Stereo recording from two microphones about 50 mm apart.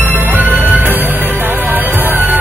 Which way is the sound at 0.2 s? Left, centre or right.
Right.